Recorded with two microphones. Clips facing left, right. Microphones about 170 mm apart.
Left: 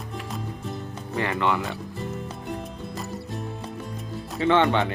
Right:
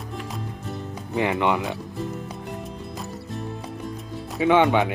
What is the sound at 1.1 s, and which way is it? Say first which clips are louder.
Speech: right 3 dB; 15° right (ahead or behind).